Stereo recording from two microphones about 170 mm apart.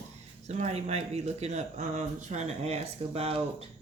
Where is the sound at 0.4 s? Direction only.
40° right (ahead or behind).